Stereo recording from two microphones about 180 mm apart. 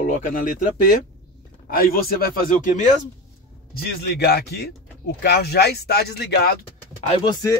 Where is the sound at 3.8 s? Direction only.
65° left (ahead or behind).